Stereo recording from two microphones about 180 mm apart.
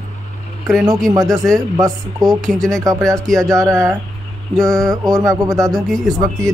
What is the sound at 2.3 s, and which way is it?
Speech, centre (ahead or behind).